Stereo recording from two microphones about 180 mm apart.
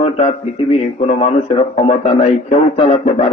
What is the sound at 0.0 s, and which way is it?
A man's voice, 30° left (ahead or behind).